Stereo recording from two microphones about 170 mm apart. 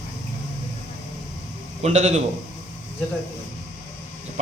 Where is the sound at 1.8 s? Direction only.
40° right (ahead or behind).